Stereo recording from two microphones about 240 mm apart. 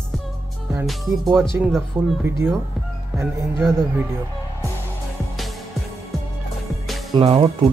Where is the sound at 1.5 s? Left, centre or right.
Centre.